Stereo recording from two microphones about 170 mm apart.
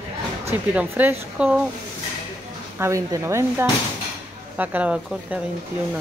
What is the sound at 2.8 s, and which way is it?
Speech, 20° right (ahead or behind).